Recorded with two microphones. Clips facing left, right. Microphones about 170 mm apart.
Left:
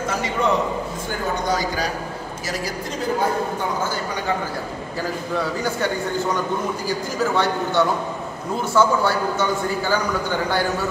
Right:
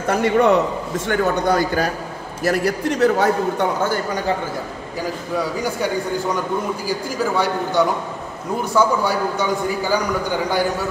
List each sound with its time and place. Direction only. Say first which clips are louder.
0.1 s a man's voice: right 8 dB; 60° right (ahead or behind)
5.4 s a man's voice: right 2 dB; 10° right (ahead or behind)
6.9 s a man's voice: even; 10° right (ahead or behind)